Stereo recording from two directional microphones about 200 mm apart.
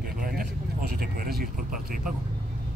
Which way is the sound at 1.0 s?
50° right (ahead or behind).